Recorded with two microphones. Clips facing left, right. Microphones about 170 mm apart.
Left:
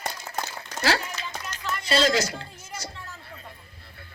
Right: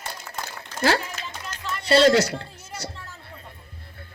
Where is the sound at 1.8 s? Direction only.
65° right (ahead or behind).